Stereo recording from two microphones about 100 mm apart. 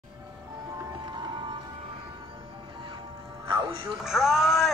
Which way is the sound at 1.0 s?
50° right (ahead or behind).